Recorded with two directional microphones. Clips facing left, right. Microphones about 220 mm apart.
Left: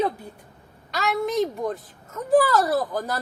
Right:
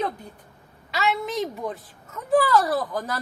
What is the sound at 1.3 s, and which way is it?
Speech, centre (ahead or behind).